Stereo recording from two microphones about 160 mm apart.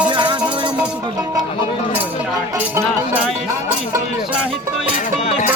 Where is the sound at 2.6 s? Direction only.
10° right (ahead or behind).